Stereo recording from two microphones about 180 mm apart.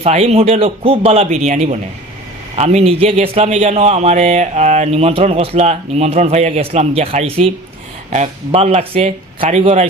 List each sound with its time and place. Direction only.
0.0 s a man's voice: 35° right (ahead or behind)